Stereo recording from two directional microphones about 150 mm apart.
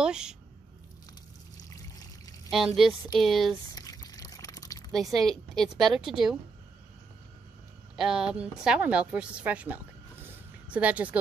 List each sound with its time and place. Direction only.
0.0 s a woman's voice: 5° right (ahead or behind)
1.7 s pour: 25° left (ahead or behind)
2.5 s a woman's voice: centre (ahead or behind)
3.7 s pour: 25° left (ahead or behind)
4.9 s a woman's voice: centre (ahead or behind)
7.9 s a woman's voice: 5° right (ahead or behind)
10.2 s a sound: 10° right (ahead or behind)